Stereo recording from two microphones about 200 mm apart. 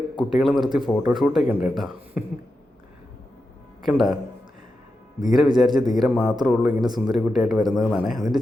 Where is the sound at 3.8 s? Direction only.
Centre (ahead or behind).